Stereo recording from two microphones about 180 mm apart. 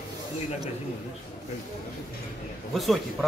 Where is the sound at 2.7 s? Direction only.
Centre (ahead or behind).